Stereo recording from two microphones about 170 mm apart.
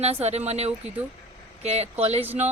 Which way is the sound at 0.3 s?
40° right (ahead or behind).